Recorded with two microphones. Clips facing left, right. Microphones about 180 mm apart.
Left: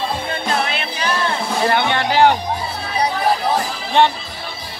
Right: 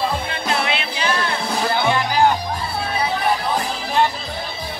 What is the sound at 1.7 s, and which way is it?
Music, 70° left (ahead or behind).